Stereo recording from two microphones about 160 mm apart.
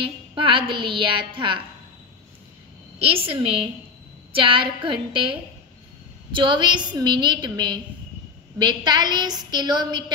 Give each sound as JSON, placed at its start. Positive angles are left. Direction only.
{"t": 0.0, "sound": "a woman's voice", "side_deg": -30}
{"t": 3.0, "sound": "a woman's voice", "side_deg": -35}